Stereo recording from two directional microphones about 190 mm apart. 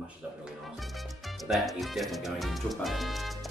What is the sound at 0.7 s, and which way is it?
Music, centre (ahead or behind).